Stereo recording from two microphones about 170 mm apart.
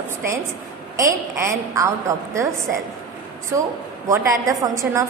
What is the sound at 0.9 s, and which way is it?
A woman's voice, 15° right (ahead or behind).